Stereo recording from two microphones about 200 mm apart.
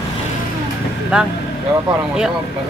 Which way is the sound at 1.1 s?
5° right (ahead or behind).